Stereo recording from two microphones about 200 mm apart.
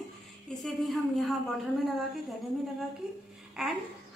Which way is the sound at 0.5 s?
Centre (ahead or behind).